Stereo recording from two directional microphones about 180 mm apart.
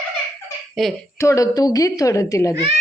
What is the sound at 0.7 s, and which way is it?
Speech, centre (ahead or behind).